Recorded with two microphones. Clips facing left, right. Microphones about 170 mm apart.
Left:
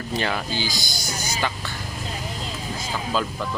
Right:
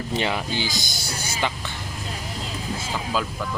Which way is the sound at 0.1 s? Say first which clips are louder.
Even; 20° right (ahead or behind).